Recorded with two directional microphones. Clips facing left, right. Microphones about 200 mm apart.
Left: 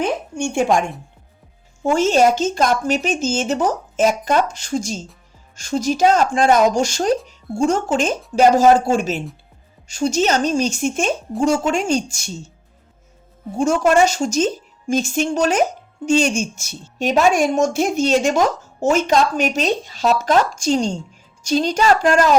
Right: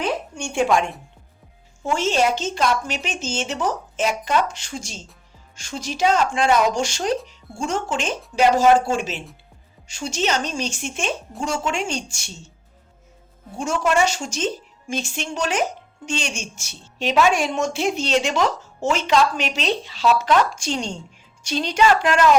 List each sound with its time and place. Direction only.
0.0 s a sound: 50° left (ahead or behind)
1.8 s speech: 45° left (ahead or behind)
13.6 s speech: 40° left (ahead or behind)